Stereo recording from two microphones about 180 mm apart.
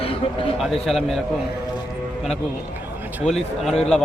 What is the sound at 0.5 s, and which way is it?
Speech, centre (ahead or behind).